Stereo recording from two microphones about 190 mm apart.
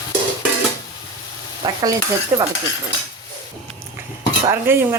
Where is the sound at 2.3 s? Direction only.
15° right (ahead or behind).